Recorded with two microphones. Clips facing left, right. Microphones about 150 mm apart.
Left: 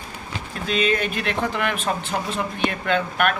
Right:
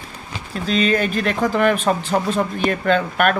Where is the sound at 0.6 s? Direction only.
35° right (ahead or behind).